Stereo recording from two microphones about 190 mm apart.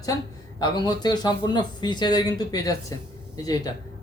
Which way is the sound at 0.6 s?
20° left (ahead or behind).